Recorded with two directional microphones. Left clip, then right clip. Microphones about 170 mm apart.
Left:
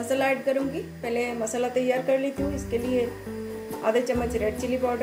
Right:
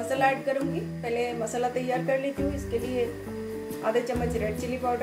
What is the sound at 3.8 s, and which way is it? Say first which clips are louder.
Speech: left 3 dB; 20° left (ahead or behind).